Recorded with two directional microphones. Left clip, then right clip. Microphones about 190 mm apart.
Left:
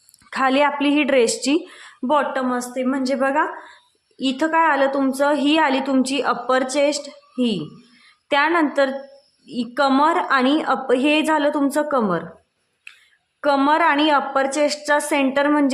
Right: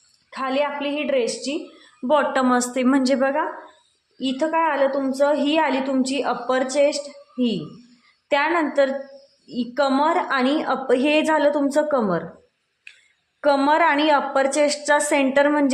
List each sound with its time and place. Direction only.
0.3 s a woman's voice: 30° left (ahead or behind)
2.3 s a woman's voice: 20° right (ahead or behind)
3.2 s a woman's voice: 5° left (ahead or behind)
4.2 s a woman's voice: 20° left (ahead or behind)
12.9 s a sound: 5° left (ahead or behind)
13.4 s a woman's voice: 5° left (ahead or behind)